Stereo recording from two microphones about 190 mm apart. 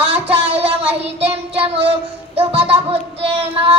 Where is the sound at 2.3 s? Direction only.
30° right (ahead or behind).